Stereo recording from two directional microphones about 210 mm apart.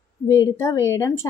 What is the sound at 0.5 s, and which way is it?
Speech, 15° left (ahead or behind).